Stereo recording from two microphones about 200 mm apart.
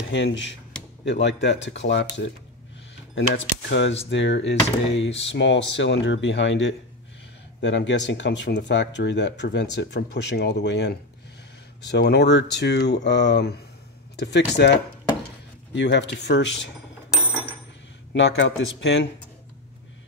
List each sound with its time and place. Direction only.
0.1 s speech: 60° left (ahead or behind)
15.7 s speech: 60° left (ahead or behind)
18.1 s speech: 65° left (ahead or behind)